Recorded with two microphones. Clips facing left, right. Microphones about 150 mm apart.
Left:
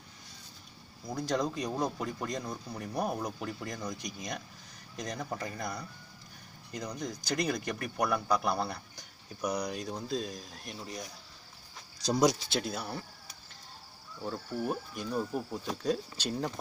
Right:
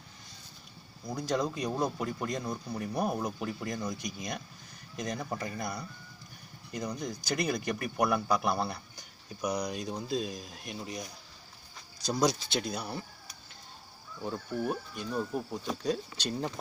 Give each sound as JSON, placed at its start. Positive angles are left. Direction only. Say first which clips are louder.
{"t": 1.0, "sound": "speech", "louder": "even", "side_deg": -5}
{"t": 12.1, "sound": "speech", "louder": "left 2 dB", "side_deg": 15}
{"t": 12.4, "sound": "speech", "louder": "even", "side_deg": 5}
{"t": 14.5, "sound": "speech", "louder": "right 1 dB", "side_deg": 5}